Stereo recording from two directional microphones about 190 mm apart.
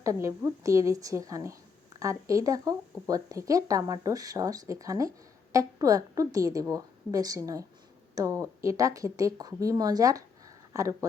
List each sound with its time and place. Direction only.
0.0 s speech: 15° right (ahead or behind)